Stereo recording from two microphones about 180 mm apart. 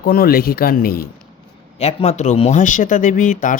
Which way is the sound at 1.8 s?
35° left (ahead or behind).